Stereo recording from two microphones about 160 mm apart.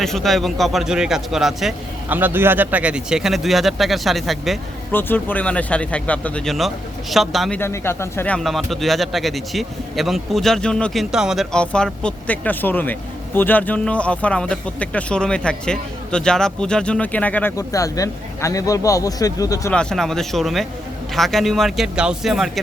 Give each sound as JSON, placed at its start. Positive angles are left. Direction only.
{"t": 0.0, "sound": "a man's voice", "side_deg": 0}
{"t": 4.9, "sound": "a man's voice", "side_deg": 10}
{"t": 7.6, "sound": "speech", "side_deg": 15}
{"t": 8.4, "sound": "a man's voice", "side_deg": 0}
{"t": 17.6, "sound": "speech", "side_deg": 20}
{"t": 19.7, "sound": "a man's voice", "side_deg": 5}